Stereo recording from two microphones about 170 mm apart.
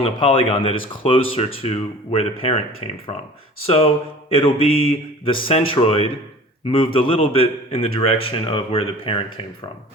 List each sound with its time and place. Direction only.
0.0 s speech: 35° left (ahead or behind)
4.3 s speech: 30° left (ahead or behind)